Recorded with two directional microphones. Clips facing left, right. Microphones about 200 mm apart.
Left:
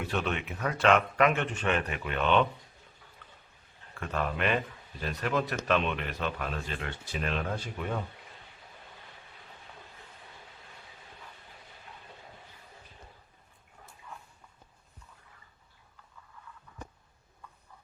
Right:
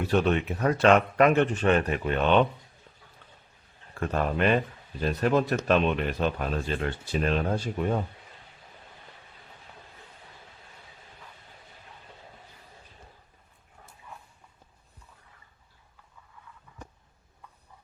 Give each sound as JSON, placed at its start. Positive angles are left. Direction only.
{"t": 0.1, "sound": "speech", "side_deg": -35}
{"t": 4.0, "sound": "speech", "side_deg": -35}